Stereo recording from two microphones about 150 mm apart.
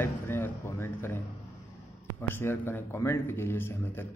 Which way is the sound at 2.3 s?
15° left (ahead or behind).